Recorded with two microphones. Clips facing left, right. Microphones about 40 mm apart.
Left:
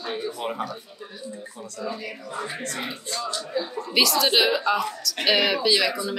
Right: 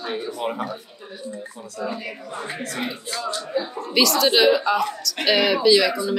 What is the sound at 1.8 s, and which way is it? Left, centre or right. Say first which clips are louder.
Speech: right 3 dB; right.